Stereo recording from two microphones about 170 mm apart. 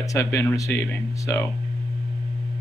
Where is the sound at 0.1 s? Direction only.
20° left (ahead or behind).